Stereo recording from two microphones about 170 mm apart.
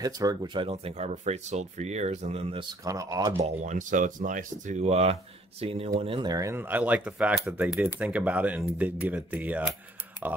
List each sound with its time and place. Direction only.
0.0 s speech: 20° right (ahead or behind)
2.8 s speech: 20° right (ahead or behind)
3.3 s speech: 40° right (ahead or behind); by 9.8 s 10° right (ahead or behind)